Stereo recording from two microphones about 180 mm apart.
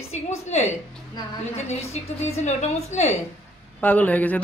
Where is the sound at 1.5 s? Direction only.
35° left (ahead or behind).